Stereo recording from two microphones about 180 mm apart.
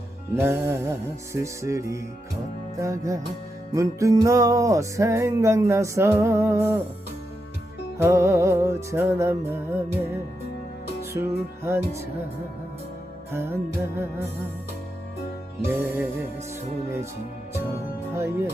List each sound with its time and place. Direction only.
0.3 s music: 15° right (ahead or behind)
7.9 s music: 15° right (ahead or behind)
11.1 s music: 15° right (ahead or behind)
13.3 s music: 15° right (ahead or behind)
15.6 s music: 10° right (ahead or behind)
18.1 s speech: 15° right (ahead or behind)